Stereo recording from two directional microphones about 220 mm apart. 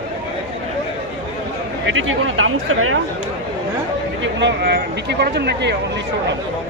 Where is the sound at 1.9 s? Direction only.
65° right (ahead or behind).